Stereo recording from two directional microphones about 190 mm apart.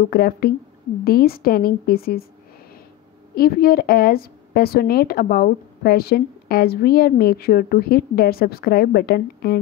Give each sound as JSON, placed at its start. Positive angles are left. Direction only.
{"t": 0.1, "sound": "a woman's voice", "side_deg": 50}
{"t": 3.3, "sound": "a woman's voice", "side_deg": 55}